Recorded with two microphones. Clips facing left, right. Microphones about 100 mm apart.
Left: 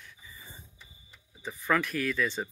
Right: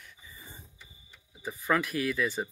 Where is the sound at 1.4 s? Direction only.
10° right (ahead or behind).